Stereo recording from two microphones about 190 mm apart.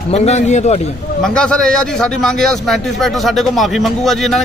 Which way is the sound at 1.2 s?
5° left (ahead or behind).